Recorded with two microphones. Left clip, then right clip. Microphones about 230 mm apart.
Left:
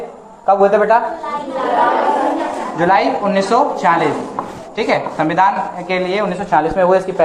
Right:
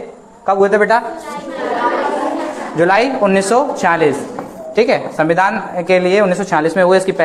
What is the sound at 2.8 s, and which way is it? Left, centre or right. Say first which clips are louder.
Speech: right 2 dB; right.